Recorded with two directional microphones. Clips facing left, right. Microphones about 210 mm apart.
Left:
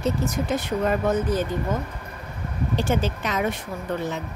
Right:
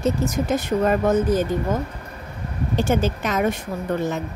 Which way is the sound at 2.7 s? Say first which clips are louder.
Right 4 dB; 45° right (ahead or behind).